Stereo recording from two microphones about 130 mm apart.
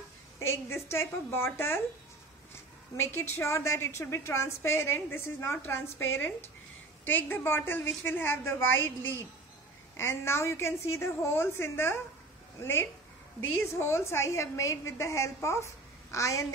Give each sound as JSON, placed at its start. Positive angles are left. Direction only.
{"t": 0.4, "sound": "a woman's voice", "side_deg": 20}
{"t": 3.0, "sound": "a woman's voice", "side_deg": 20}